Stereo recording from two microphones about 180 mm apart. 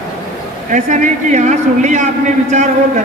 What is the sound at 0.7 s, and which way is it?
A man's voice, 45° right (ahead or behind).